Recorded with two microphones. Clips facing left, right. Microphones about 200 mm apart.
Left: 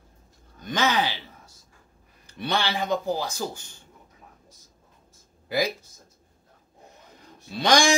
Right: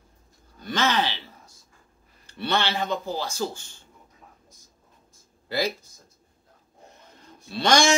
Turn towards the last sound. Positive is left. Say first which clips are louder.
# even
turn(degrees=15)  # may be behind; listen again after turning